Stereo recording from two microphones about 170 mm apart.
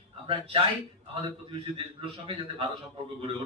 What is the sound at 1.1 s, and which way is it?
A man's voice, 35° right (ahead or behind).